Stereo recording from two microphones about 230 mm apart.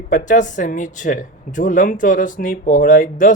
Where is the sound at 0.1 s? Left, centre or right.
Left.